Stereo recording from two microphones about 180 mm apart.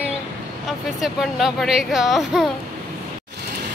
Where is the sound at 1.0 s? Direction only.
Centre (ahead or behind).